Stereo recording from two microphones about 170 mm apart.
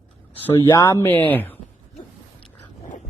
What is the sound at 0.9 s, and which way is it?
Speech, 10° left (ahead or behind).